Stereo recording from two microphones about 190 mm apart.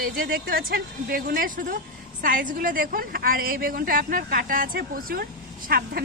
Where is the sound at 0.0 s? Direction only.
50° right (ahead or behind).